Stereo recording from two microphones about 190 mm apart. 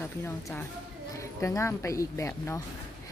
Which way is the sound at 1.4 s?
15° left (ahead or behind).